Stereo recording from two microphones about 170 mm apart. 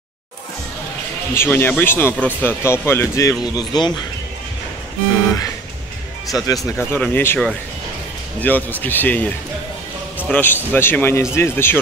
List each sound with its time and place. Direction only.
1.3 s speech: 15° left (ahead or behind)
6.3 s speech: 20° left (ahead or behind)
8.4 s speech: 10° left (ahead or behind)
10.3 s speech: 10° left (ahead or behind)